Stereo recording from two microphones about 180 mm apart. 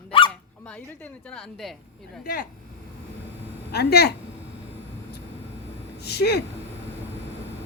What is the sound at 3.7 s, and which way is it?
Speech, 65° left (ahead or behind).